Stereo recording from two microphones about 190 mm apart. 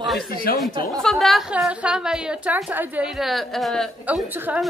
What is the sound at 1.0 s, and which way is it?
A woman's voice, centre (ahead or behind).